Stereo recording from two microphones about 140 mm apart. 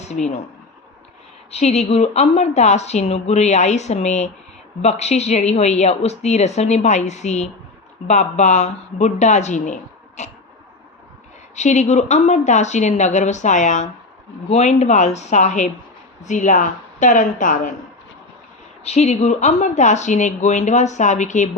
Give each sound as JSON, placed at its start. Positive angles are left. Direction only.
{"t": 0.0, "sound": "speech", "side_deg": 55}
{"t": 1.5, "sound": "a woman's voice", "side_deg": 50}
{"t": 10.2, "sound": "a sound", "side_deg": 55}
{"t": 11.5, "sound": "a woman's voice", "side_deg": 55}
{"t": 18.9, "sound": "speech", "side_deg": 50}